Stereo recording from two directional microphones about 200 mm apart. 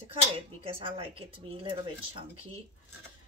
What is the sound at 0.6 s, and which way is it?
Speech, 25° right (ahead or behind).